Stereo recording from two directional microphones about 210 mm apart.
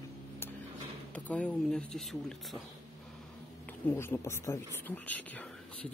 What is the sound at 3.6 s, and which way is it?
Speech, 10° left (ahead or behind).